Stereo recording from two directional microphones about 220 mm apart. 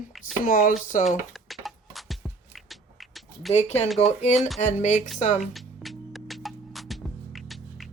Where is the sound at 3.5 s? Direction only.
30° left (ahead or behind).